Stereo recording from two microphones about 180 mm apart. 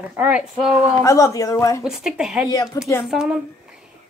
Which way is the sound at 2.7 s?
20° left (ahead or behind).